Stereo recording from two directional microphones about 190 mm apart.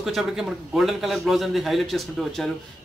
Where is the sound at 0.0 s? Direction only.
Centre (ahead or behind).